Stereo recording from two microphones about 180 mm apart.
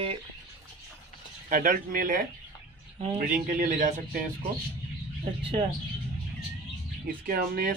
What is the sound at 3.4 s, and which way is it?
Speech, 55° right (ahead or behind).